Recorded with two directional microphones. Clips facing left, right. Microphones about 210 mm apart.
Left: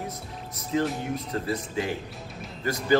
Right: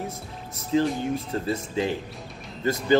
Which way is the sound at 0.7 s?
30° right (ahead or behind).